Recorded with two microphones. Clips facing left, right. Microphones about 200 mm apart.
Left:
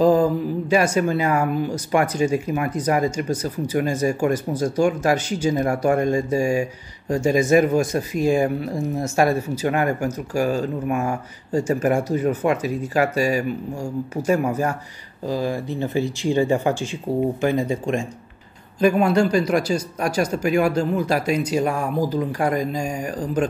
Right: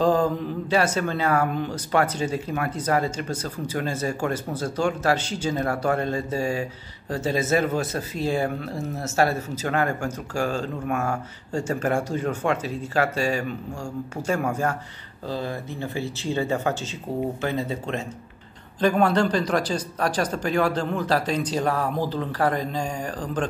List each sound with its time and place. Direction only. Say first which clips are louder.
0.0 s speech: left 4 dB; 10° left (ahead or behind)